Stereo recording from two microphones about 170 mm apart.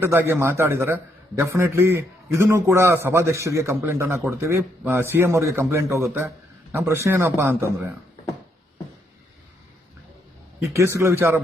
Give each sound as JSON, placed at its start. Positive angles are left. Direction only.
{"t": 0.0, "sound": "a man's voice", "side_deg": -15}
{"t": 10.6, "sound": "a man's voice", "side_deg": -15}